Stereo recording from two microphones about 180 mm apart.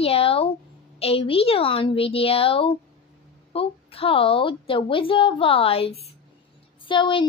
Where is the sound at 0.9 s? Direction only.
35° left (ahead or behind).